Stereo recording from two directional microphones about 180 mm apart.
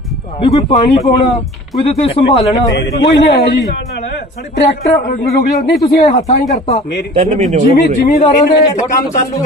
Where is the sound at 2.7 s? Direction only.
70° left (ahead or behind).